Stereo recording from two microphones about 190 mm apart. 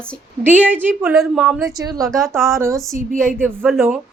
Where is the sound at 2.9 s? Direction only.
45° right (ahead or behind).